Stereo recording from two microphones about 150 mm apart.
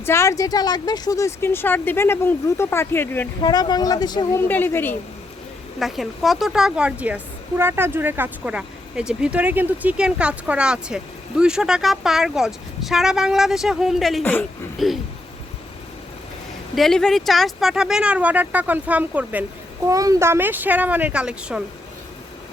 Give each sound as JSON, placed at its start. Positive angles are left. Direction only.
{"t": 0.0, "sound": "a woman's voice", "side_deg": 15}
{"t": 3.4, "sound": "a woman's voice", "side_deg": 30}
{"t": 5.8, "sound": "a woman's voice", "side_deg": 0}
{"t": 16.7, "sound": "a woman's voice", "side_deg": 0}
{"t": 19.9, "sound": "speech", "side_deg": -20}